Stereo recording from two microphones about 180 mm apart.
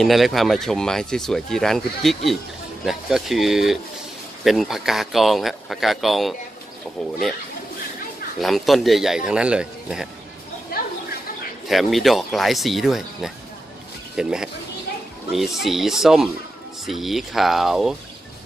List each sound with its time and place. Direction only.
0.0 s speech: centre (ahead or behind)
8.4 s speech: centre (ahead or behind)
10.7 s a sound: 55° left (ahead or behind)
11.6 s speech: centre (ahead or behind)